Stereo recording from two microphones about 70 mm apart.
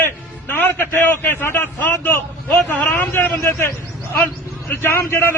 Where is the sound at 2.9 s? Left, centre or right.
Left.